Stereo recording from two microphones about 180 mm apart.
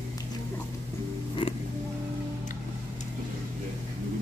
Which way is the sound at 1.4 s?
25° left (ahead or behind).